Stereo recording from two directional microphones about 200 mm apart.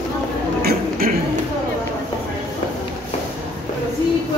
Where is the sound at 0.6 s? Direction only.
50° right (ahead or behind).